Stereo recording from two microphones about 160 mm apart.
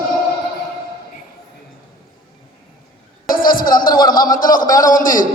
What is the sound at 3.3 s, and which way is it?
A man's voice, 65° left (ahead or behind).